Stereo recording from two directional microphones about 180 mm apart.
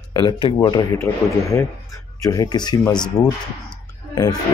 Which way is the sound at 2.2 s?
20° left (ahead or behind).